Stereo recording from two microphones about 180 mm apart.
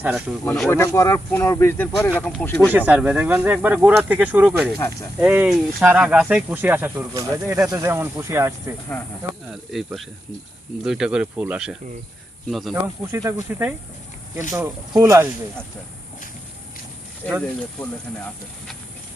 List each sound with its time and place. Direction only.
0.4 s speech: centre (ahead or behind)
0.7 s speech: 15° left (ahead or behind)
2.6 s speech: 10° right (ahead or behind)
9.5 s speech: centre (ahead or behind)
13.1 s speech: 15° right (ahead or behind)
17.2 s speech: 10° left (ahead or behind)